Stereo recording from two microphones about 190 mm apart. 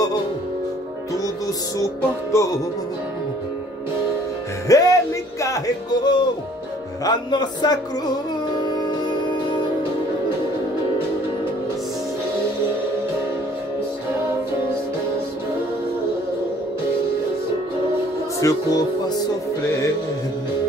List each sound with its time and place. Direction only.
1.8 s music: 15° left (ahead or behind)
4.7 s music: 20° left (ahead or behind)
7.1 s speech: 20° left (ahead or behind)
8.7 s music: 25° left (ahead or behind)
18.4 s speech: 20° left (ahead or behind)